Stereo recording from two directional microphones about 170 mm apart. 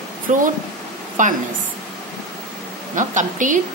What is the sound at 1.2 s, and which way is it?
Speech, 50° right (ahead or behind).